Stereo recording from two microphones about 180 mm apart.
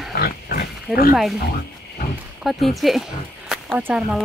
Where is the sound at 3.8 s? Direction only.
10° right (ahead or behind).